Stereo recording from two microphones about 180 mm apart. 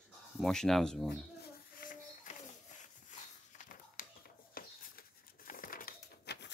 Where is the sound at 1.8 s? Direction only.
50° left (ahead or behind).